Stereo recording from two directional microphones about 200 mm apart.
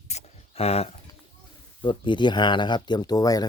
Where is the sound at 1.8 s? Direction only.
25° left (ahead or behind).